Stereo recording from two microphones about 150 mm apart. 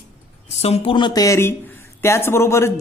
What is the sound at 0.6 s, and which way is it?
Speech, 45° left (ahead or behind).